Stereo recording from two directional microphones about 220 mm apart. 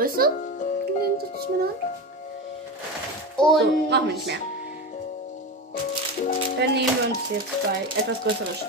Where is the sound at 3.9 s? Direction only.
50° right (ahead or behind).